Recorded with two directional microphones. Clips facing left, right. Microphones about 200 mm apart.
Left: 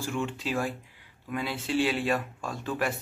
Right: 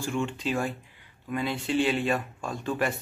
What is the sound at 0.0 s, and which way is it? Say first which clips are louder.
Speech: right 2 dB; centre (ahead or behind).